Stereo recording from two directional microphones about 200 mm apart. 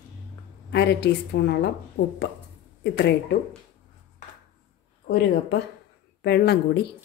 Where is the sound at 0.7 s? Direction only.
55° left (ahead or behind).